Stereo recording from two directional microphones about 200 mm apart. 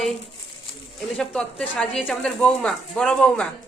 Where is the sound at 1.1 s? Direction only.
5° left (ahead or behind).